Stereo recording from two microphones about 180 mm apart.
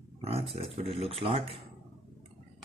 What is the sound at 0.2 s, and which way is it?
Speech, 35° right (ahead or behind).